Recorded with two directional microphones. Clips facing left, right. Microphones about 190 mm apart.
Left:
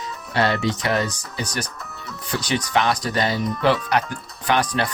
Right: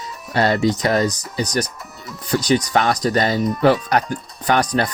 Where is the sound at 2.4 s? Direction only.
40° right (ahead or behind).